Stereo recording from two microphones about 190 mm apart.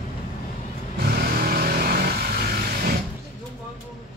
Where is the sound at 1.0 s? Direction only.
55° right (ahead or behind).